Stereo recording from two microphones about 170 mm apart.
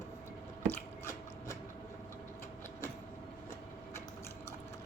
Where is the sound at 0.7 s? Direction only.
15° left (ahead or behind).